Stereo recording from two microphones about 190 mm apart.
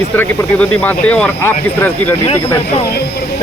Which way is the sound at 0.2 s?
10° left (ahead or behind).